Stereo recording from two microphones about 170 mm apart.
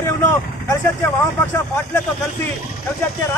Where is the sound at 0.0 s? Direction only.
15° left (ahead or behind).